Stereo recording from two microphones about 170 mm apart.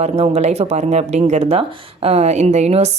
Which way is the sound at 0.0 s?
40° right (ahead or behind).